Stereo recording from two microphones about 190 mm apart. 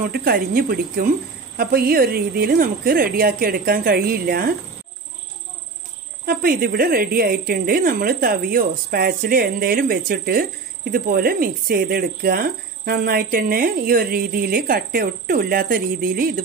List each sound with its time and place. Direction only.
0.1 s speech: 50° right (ahead or behind)
6.2 s speech: 50° right (ahead or behind)